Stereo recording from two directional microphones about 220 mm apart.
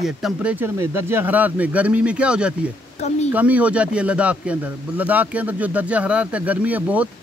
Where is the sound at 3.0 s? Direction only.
30° left (ahead or behind).